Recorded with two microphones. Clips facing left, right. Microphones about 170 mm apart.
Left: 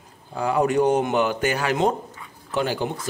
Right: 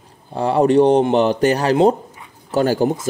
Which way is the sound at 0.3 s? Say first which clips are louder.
Right 6 dB; 35° right (ahead or behind).